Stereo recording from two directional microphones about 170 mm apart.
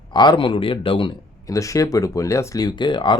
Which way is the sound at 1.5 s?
20° left (ahead or behind).